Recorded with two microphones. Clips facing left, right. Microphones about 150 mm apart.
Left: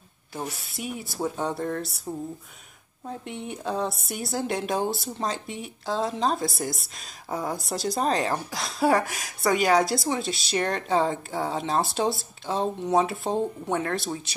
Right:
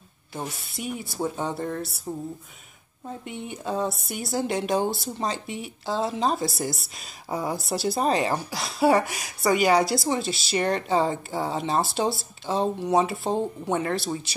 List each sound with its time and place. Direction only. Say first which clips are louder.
0.3 s speech: even; centre (ahead or behind)